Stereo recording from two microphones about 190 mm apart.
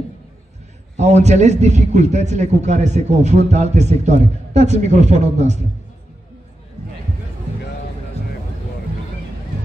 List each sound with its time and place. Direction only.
0.9 s a man's voice: 35° right (ahead or behind)